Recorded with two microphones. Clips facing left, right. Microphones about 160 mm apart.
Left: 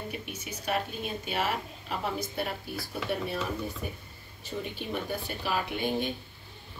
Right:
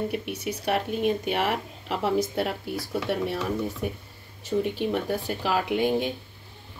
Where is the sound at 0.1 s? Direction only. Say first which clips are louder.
Right 9 dB; 65° right (ahead or behind); by 6.0 s 90° right.